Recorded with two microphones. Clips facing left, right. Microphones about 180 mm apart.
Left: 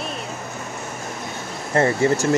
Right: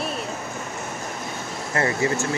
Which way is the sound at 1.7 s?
30° left (ahead or behind).